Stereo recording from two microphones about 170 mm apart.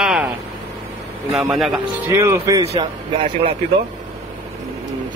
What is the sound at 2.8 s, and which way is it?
Speech, 35° right (ahead or behind).